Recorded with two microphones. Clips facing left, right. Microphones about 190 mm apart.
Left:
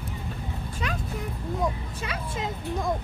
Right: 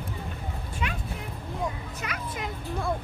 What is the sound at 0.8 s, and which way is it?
Vehicle, 40° left (ahead or behind).